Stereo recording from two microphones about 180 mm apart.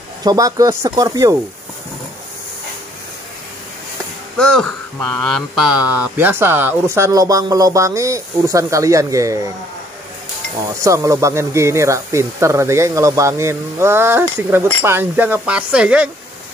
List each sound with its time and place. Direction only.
0.2 s speech: 20° right (ahead or behind)
4.4 s speech: 5° left (ahead or behind); by 9.4 s 15° right (ahead or behind)
10.8 s speech: 15° right (ahead or behind)